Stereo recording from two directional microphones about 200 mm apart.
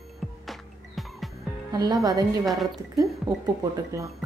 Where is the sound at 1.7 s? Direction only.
20° right (ahead or behind).